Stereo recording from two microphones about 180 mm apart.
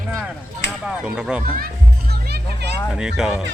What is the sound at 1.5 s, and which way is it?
Children playing, 55° right (ahead or behind).